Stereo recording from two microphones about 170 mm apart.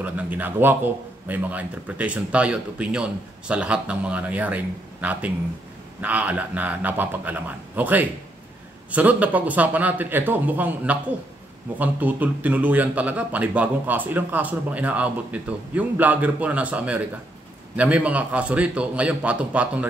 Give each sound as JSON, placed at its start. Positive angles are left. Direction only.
{"t": 0.0, "sound": "a man's voice", "side_deg": -10}